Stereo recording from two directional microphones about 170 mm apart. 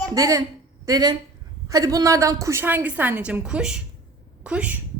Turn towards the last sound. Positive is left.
turn(degrees=-5)  # may be behind; listen again after turning